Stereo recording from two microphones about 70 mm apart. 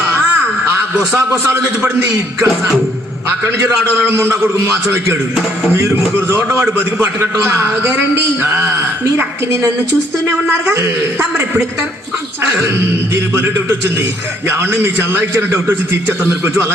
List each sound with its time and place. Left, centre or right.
1.5 s a man's voice: right
4.1 s a man's voice: right
5.7 s a man's voice: right
11.2 s a man's voice: right
13.1 s a man's voice: right